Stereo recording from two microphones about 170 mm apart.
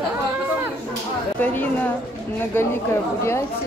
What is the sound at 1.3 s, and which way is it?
Speech, 10° left (ahead or behind).